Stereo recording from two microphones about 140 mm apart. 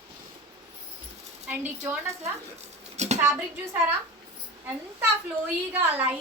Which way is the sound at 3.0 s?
55° right (ahead or behind).